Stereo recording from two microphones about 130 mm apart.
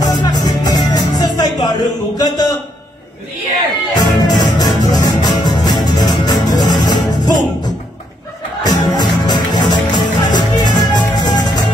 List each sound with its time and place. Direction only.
0.0 s music: 30° left (ahead or behind)
3.9 s music: 30° left (ahead or behind)
8.6 s music: 30° left (ahead or behind)